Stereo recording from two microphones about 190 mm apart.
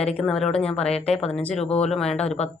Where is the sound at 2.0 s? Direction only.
35° left (ahead or behind).